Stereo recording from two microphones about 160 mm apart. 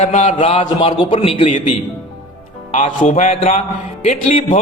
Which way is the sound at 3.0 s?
55° left (ahead or behind).